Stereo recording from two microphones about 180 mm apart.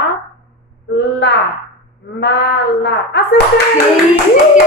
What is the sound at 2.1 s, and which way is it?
Speech, 70° left (ahead or behind).